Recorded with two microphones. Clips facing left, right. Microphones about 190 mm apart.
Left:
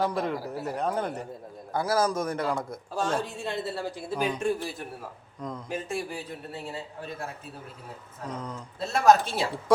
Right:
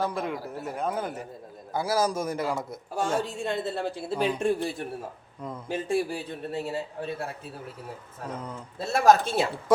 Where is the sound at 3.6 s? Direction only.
25° right (ahead or behind).